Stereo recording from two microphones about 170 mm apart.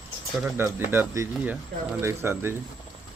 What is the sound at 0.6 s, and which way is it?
Speech, 15° right (ahead or behind).